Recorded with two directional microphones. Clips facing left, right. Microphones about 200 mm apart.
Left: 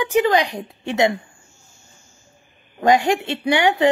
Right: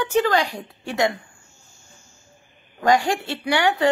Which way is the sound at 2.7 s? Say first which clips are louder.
Left 3 dB; 20° left (ahead or behind).